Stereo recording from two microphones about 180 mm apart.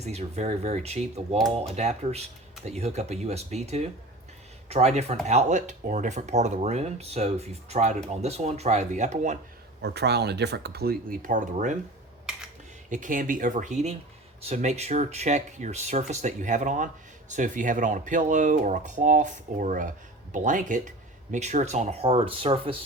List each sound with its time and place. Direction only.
0.0 s speech: 35° right (ahead or behind)
9.8 s speech: 65° right (ahead or behind); by 11.8 s 45° right (ahead or behind)
12.9 s speech: 45° right (ahead or behind); by 22.7 s 30° right (ahead or behind)